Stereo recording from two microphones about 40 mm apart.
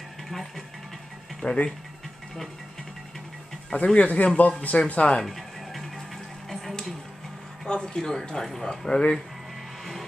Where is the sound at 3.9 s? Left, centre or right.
Left.